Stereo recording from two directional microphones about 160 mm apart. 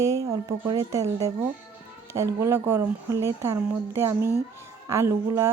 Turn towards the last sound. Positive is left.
turn(degrees=-15)  # may be behind; listen again after turning